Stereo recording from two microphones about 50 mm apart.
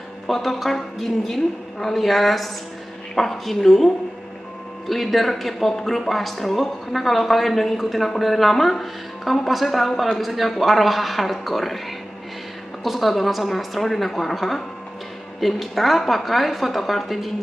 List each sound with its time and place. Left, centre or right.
0.3 s speech: centre
12.8 s speech: centre